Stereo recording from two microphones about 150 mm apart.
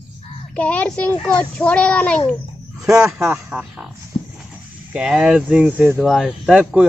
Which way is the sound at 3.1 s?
10° right (ahead or behind).